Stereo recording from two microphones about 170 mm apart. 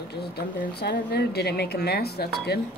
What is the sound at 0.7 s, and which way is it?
Speech, 70° left (ahead or behind).